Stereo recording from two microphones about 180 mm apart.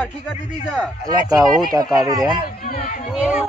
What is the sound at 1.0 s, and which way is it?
Speech, 20° right (ahead or behind).